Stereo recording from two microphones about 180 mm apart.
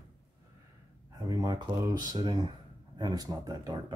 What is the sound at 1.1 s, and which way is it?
Speech, 20° right (ahead or behind).